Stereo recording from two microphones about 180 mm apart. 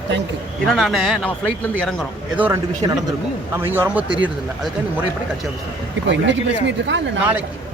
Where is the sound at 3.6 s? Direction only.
10° right (ahead or behind).